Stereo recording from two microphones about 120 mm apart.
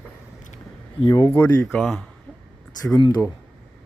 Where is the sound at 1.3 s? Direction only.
15° left (ahead or behind).